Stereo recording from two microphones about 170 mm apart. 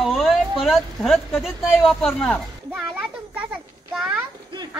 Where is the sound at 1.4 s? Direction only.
Centre (ahead or behind).